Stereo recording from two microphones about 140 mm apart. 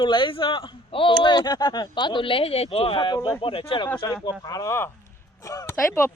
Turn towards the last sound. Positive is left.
turn(degrees=15)  # may be behind; listen again after turning